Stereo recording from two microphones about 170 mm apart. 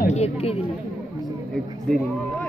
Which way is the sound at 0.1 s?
35° left (ahead or behind).